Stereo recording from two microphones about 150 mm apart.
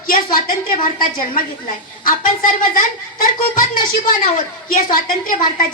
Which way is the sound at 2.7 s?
65° left (ahead or behind).